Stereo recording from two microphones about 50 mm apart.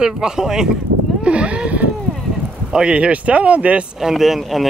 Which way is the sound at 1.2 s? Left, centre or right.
Right.